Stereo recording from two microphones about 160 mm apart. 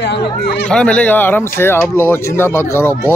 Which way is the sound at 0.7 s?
5° left (ahead or behind).